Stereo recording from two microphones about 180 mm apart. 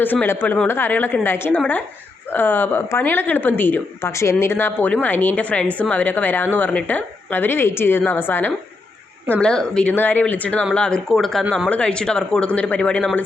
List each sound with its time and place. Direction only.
0.0 s speech: 10° left (ahead or behind)